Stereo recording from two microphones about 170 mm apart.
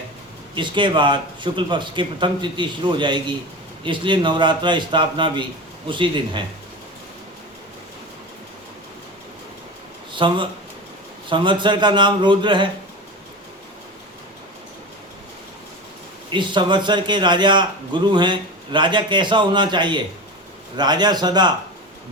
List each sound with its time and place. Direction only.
0.5 s a man's voice: 30° right (ahead or behind)
10.1 s a man's voice: 30° right (ahead or behind)
16.3 s a man's voice: 30° right (ahead or behind)